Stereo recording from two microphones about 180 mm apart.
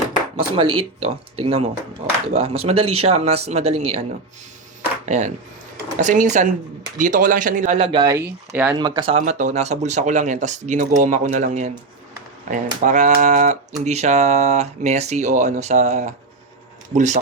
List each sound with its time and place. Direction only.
0.3 s speech: 30° right (ahead or behind)
5.0 s speech: 40° right (ahead or behind)
8.0 s speech: 15° right (ahead or behind)
8.8 s speech: 25° right (ahead or behind)
9.2 s speech: 40° right (ahead or behind)